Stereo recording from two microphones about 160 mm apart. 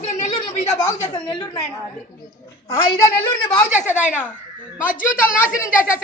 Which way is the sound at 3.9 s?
50° left (ahead or behind).